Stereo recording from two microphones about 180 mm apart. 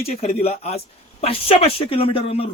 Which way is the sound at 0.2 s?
35° left (ahead or behind).